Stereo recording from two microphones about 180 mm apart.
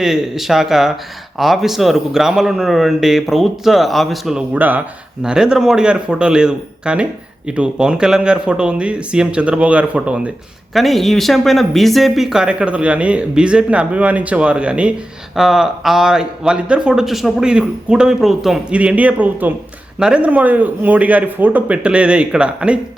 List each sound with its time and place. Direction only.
0.0 s a man's voice: centre (ahead or behind)